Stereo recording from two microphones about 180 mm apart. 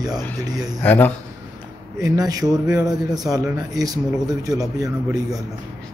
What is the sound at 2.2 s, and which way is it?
Speech, 20° right (ahead or behind).